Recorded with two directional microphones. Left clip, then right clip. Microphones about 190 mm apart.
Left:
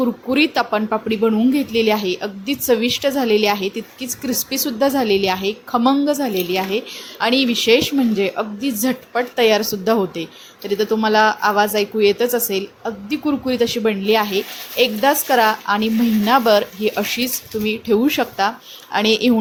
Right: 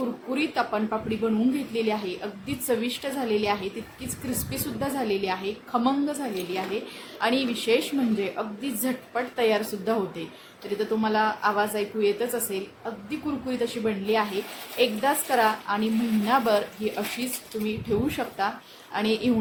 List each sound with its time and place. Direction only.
0.3 s a woman's voice: 35° left (ahead or behind)